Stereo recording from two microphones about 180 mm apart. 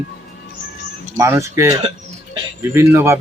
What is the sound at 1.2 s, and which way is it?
Speech, 15° right (ahead or behind).